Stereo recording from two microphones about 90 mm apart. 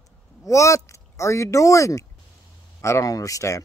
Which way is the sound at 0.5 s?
35° left (ahead or behind).